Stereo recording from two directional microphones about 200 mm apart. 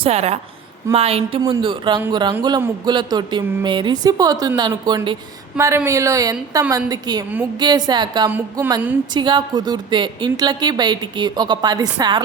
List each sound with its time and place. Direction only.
0.0 s a woman's voice: 30° right (ahead or behind)
8.3 s speech: 10° right (ahead or behind)
9.1 s a woman's voice: 25° right (ahead or behind)